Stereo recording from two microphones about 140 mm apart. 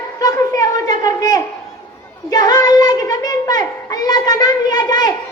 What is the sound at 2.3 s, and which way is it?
Child singing, 30° left (ahead or behind).